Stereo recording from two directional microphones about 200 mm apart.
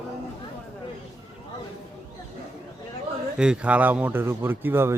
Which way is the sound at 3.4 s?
5° right (ahead or behind).